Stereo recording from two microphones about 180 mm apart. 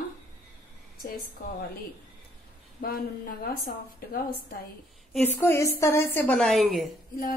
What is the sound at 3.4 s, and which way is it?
A woman's voice, 55° left (ahead or behind).